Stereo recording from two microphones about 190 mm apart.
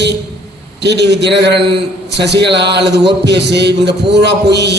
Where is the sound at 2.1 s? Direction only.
65° right (ahead or behind).